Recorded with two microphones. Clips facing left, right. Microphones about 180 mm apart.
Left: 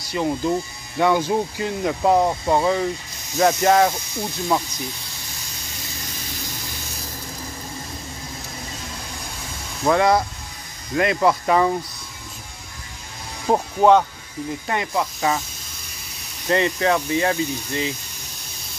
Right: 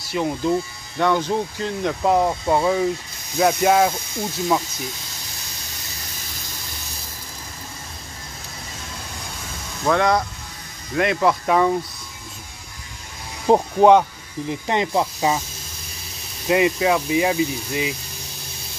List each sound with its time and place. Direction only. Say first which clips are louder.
0.0 s speech: even; centre (ahead or behind)
9.8 s speech: left 1 dB; 5° left (ahead or behind)
13.5 s speech: right 2 dB; 15° right (ahead or behind)
16.4 s speech: right 2 dB; 10° right (ahead or behind)